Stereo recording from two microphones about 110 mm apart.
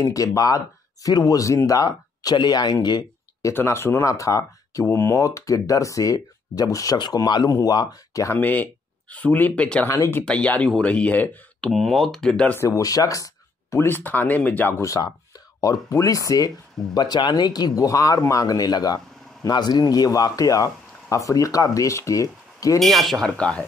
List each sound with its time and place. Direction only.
0.0 s speech: 30° left (ahead or behind)
3.5 s speech: 25° left (ahead or behind)
8.4 s speech: 15° left (ahead or behind)
9.8 s speech: 30° left (ahead or behind)
10.2 s speech: 10° left (ahead or behind)
11.7 s speech: centre (ahead or behind)
12.5 s speech: 30° left (ahead or behind)
22.8 s speech: centre (ahead or behind)